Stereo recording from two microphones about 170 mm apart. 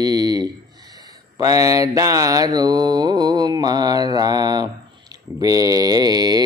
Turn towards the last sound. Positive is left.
turn(degrees=-25)  # may be behind; listen again after turning